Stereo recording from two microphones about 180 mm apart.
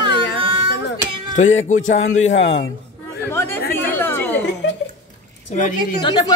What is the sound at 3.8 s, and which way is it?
Chatter, 10° left (ahead or behind).